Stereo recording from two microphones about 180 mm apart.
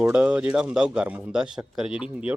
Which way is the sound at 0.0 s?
5° right (ahead or behind).